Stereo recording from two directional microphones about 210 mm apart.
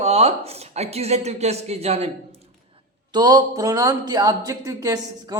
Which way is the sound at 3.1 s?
20° right (ahead or behind).